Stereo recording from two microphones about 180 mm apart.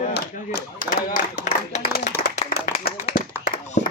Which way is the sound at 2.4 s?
50° left (ahead or behind).